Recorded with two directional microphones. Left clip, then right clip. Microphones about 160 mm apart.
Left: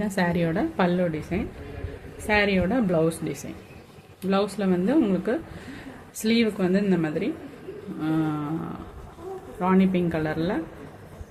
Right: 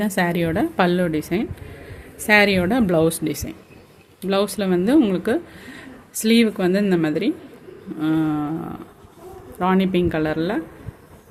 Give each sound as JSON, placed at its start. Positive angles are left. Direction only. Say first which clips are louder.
{"t": 0.0, "sound": "a woman's voice", "louder": "right 4 dB", "side_deg": -50}
{"t": 2.2, "sound": "a woman's voice", "louder": "right 7 dB", "side_deg": -90}
{"t": 7.9, "sound": "speech", "louder": "right 6 dB", "side_deg": -45}
{"t": 9.6, "sound": "speech", "louder": "right 4 dB", "side_deg": -60}